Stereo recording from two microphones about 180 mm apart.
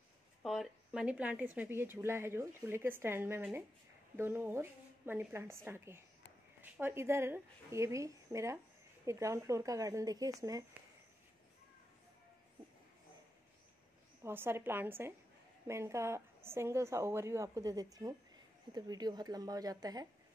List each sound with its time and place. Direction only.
0.4 s speech: centre (ahead or behind); by 10.6 s 20° right (ahead or behind)
14.2 s speech: 15° right (ahead or behind)